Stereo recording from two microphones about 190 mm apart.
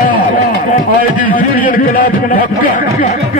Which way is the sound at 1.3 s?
45° left (ahead or behind).